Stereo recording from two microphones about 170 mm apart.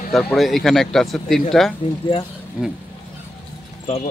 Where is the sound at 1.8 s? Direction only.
35° left (ahead or behind).